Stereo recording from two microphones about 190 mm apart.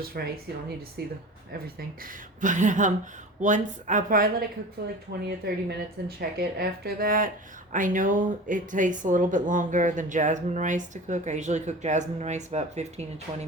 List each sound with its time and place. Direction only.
0.1 s speech: 50° right (ahead or behind)
2.4 s speech: 40° right (ahead or behind)
5.1 s speech: 60° right (ahead or behind); by 13.5 s 35° right (ahead or behind)